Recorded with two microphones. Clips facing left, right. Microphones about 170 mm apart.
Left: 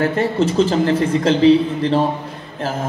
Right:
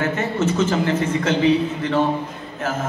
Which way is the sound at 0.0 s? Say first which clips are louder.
Left 4 dB; 35° left (ahead or behind).